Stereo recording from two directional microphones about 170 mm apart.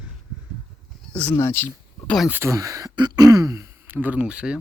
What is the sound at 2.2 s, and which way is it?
Speech, 15° right (ahead or behind).